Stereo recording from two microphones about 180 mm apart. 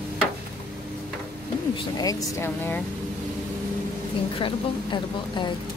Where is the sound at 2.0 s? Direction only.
15° left (ahead or behind).